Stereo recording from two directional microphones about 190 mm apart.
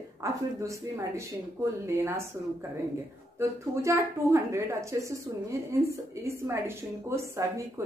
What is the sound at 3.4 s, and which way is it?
A woman's voice, 15° right (ahead or behind).